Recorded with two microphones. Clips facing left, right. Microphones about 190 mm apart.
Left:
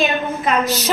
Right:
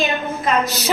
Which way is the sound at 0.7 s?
10° right (ahead or behind).